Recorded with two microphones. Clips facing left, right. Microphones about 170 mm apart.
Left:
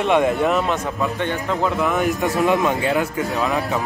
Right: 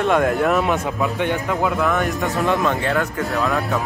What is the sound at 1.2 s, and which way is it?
Speech, 15° right (ahead or behind).